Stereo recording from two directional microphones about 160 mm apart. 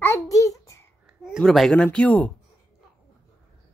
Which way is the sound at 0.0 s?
15° left (ahead or behind).